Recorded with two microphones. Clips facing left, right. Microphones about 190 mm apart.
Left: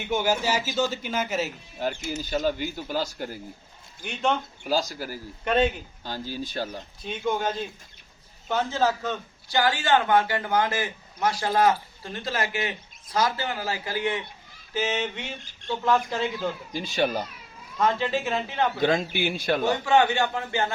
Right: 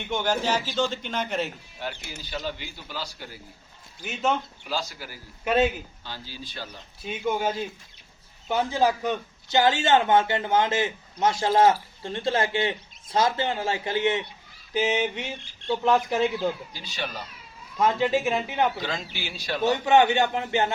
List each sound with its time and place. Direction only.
0.1 s speech: 10° left (ahead or behind)
2.0 s speech: 45° left (ahead or behind)
4.0 s speech: 5° right (ahead or behind)
4.6 s speech: 40° left (ahead or behind)
5.5 s speech: 5° right (ahead or behind)
6.1 s speech: 45° left (ahead or behind)
7.0 s a man's voice: 5° right (ahead or behind)
16.7 s speech: 50° left (ahead or behind)
17.7 s a man's voice: 15° right (ahead or behind)
18.8 s speech: 55° left (ahead or behind)
19.6 s a man's voice: 20° right (ahead or behind)